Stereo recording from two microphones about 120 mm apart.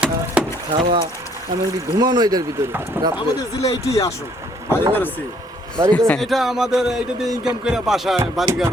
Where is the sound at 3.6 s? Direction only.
30° left (ahead or behind).